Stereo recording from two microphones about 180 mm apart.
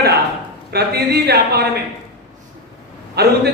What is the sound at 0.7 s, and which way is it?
Speech, 65° right (ahead or behind).